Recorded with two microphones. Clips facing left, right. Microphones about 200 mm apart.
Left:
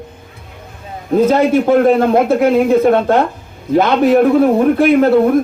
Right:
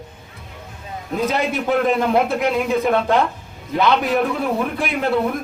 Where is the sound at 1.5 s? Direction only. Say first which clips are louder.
Left 7 dB; 50° left (ahead or behind).